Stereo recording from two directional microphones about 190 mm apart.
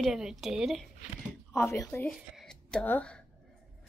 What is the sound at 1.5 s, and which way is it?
Speech, 15° left (ahead or behind).